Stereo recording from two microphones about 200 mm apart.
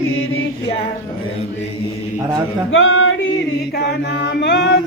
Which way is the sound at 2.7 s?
80° left.